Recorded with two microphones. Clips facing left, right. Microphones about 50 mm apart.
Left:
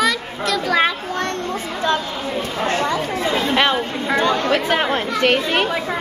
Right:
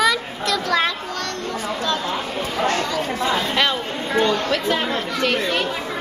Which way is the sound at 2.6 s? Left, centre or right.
Left.